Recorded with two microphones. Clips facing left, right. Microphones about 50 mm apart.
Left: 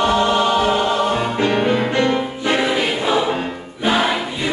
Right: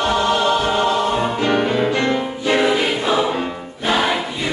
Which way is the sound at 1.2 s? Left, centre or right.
Left.